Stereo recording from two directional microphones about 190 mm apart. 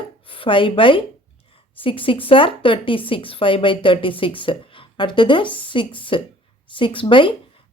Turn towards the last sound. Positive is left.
turn(degrees=25)  # may be behind; listen again after turning